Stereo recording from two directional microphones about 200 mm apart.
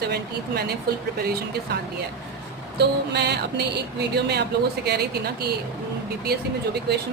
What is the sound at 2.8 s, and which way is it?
Speech, 55° right (ahead or behind).